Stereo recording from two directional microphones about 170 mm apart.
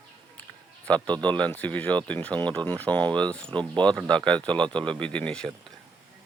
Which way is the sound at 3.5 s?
30° right (ahead or behind).